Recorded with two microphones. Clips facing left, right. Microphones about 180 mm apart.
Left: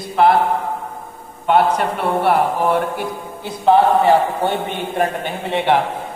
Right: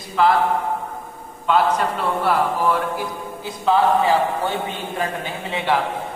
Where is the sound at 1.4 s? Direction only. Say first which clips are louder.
Left 3 dB; 60° left (ahead or behind).